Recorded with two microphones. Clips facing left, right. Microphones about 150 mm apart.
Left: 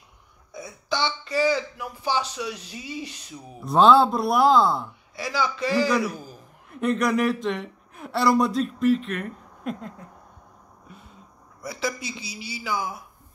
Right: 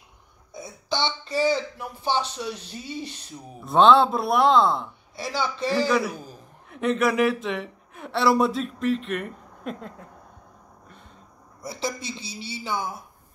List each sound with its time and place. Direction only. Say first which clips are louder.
1.0 s speech: even; 25° right (ahead or behind)
2.7 s speech: right 1 dB; 5° left (ahead or behind)
5.1 s speech: left 1 dB; 25° right (ahead or behind)
5.8 s speech: left 1 dB; centre (ahead or behind)
11.6 s speech: left 1 dB; 25° right (ahead or behind)